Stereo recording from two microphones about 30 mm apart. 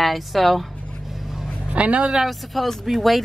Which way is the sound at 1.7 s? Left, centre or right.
Right.